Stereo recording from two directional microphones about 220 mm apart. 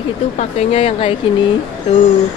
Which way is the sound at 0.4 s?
30° left (ahead or behind).